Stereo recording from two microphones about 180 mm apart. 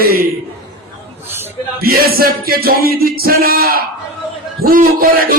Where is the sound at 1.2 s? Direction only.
10° right (ahead or behind).